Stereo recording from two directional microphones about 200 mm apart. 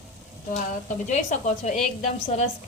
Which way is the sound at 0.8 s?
35° left (ahead or behind).